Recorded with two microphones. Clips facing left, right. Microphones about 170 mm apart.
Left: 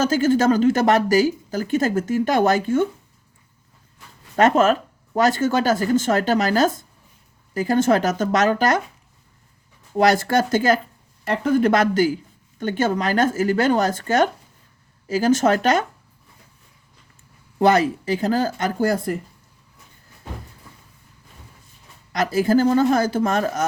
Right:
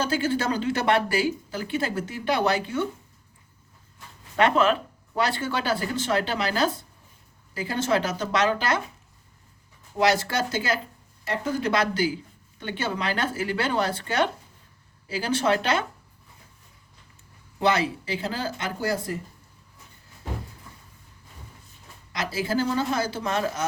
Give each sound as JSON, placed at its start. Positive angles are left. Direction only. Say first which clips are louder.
{"t": 0.0, "sound": "a woman's voice", "louder": "left 8 dB", "side_deg": 45}
{"t": 4.4, "sound": "a woman's voice", "louder": "left 5 dB", "side_deg": 45}
{"t": 10.0, "sound": "a woman's voice", "louder": "left 6 dB", "side_deg": 50}
{"t": 17.6, "sound": "a woman's voice", "louder": "left 7 dB", "side_deg": 45}
{"t": 22.1, "sound": "a woman's voice", "louder": "left 9 dB", "side_deg": 50}